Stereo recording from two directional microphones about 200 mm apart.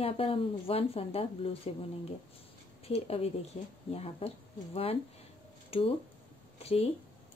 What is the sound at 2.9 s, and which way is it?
A woman's voice, 30° left (ahead or behind).